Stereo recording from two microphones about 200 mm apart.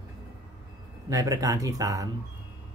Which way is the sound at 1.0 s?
15° right (ahead or behind).